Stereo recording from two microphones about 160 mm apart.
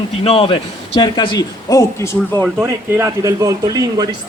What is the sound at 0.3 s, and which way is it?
A man's voice, 35° left (ahead or behind).